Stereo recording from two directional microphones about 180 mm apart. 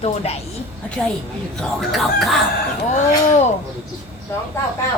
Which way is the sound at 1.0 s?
Centre (ahead or behind).